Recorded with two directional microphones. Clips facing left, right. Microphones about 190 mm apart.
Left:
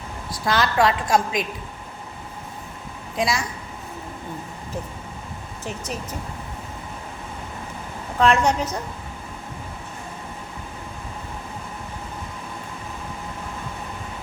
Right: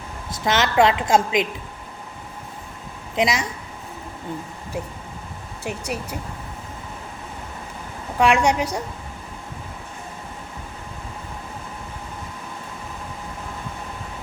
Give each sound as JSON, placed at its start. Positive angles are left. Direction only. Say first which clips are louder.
{"t": 0.4, "sound": "a woman's voice", "louder": "right 2 dB", "side_deg": -20}
{"t": 3.2, "sound": "a woman's voice", "louder": "right 2 dB", "side_deg": -20}
{"t": 5.6, "sound": "a woman's voice", "louder": "right 3 dB", "side_deg": -10}
{"t": 8.2, "sound": "a woman's voice", "louder": "right 1 dB", "side_deg": -10}